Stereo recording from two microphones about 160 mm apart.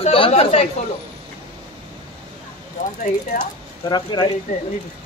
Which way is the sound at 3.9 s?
25° left (ahead or behind).